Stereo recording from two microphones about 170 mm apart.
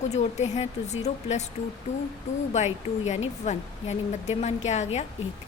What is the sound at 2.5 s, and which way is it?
A woman's voice, 40° left (ahead or behind).